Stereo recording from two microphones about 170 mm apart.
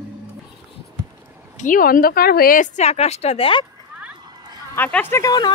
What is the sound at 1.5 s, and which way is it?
A woman's voice, 50° left (ahead or behind).